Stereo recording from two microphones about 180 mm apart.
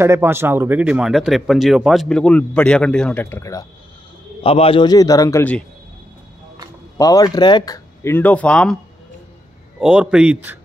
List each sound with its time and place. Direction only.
0.0 s speech: 15° right (ahead or behind); by 3.6 s 15° left (ahead or behind)
4.4 s speech: 30° left (ahead or behind); by 5.6 s 15° left (ahead or behind)
7.0 s speech: 20° left (ahead or behind)
9.8 s a man's voice: 5° right (ahead or behind)